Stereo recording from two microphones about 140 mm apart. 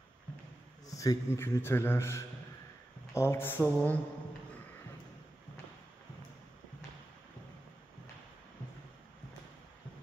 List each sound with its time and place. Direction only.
0.8 s a man's voice: 25° left (ahead or behind)